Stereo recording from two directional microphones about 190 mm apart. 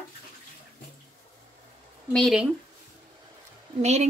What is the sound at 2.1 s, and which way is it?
Speech, 5° left (ahead or behind).